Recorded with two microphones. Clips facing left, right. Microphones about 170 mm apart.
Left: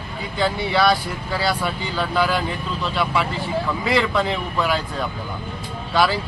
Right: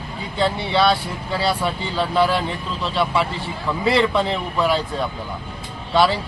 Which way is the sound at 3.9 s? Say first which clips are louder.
Right 3 dB; 30° right (ahead or behind).